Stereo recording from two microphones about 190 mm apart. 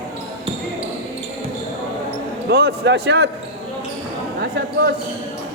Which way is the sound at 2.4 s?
60° right (ahead or behind).